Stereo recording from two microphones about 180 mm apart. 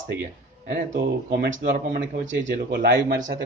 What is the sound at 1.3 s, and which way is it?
Speech, 65° right (ahead or behind).